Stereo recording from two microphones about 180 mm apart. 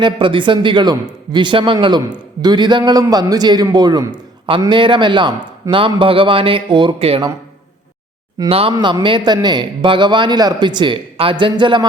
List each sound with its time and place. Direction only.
0.0 s a man's voice: 30° right (ahead or behind)
8.4 s a man's voice: 30° right (ahead or behind)